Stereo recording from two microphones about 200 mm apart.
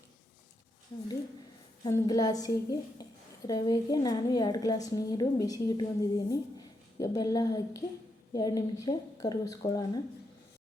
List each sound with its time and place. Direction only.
1.9 s a woman's voice: 20° left (ahead or behind)